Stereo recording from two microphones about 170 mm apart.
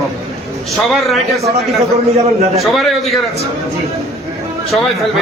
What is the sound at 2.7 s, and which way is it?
Speech, centre (ahead or behind).